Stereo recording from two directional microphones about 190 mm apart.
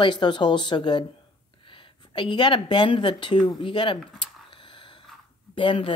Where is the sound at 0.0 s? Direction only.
25° left (ahead or behind).